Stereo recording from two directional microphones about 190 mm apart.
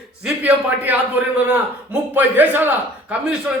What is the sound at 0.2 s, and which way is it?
A man's voice, 10° right (ahead or behind).